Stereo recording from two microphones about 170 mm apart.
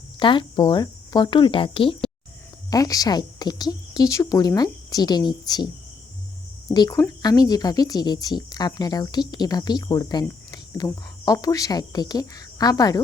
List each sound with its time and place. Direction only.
0.2 s speech: 30° left (ahead or behind)
6.7 s speech: 25° left (ahead or behind)